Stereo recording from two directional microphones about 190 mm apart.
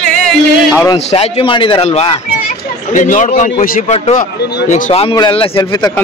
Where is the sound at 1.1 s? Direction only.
30° left (ahead or behind).